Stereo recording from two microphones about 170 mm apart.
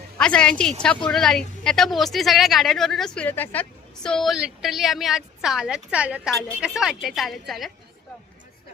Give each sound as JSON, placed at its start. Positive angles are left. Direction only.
{"t": 0.2, "sound": "speech", "side_deg": 5}